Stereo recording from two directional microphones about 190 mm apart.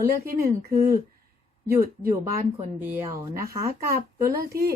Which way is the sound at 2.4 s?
10° right (ahead or behind).